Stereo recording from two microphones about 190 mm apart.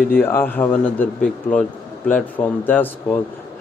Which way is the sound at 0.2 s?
10° left (ahead or behind).